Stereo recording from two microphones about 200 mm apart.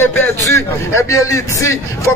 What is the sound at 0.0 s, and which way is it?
Speech, 10° left (ahead or behind).